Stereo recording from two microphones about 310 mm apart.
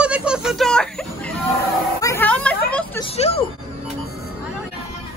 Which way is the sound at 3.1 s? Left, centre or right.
Left.